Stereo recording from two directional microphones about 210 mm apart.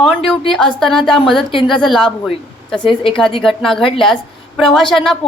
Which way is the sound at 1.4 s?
25° left (ahead or behind).